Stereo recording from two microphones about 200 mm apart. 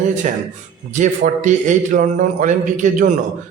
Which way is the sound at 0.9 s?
40° right (ahead or behind).